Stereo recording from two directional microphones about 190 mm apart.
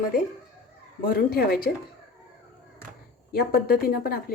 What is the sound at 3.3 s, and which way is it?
Speech, 50° left (ahead or behind).